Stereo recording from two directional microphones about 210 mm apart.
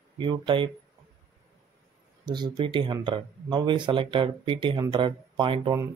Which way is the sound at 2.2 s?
20° right (ahead or behind).